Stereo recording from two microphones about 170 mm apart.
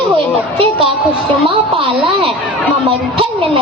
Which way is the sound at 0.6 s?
30° right (ahead or behind).